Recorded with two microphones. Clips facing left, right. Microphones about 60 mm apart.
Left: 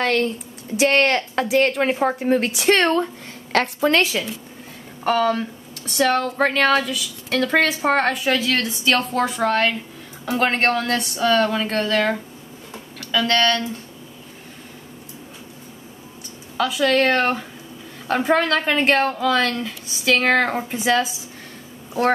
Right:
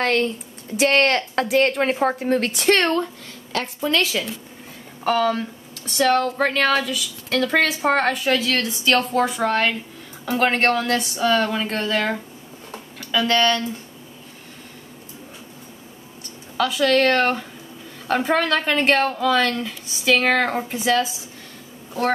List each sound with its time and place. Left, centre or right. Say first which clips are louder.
0.0 s speech: even; centre
2.7 s speech: left 1 dB; centre
3.5 s a woman's voice: left 5 dB; left
4.1 s speech: even; centre
16.5 s a woman's voice: even; centre